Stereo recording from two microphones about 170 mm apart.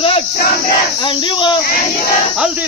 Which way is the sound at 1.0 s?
30° left (ahead or behind).